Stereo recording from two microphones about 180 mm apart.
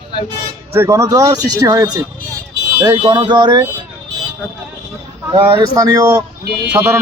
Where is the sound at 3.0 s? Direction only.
30° right (ahead or behind).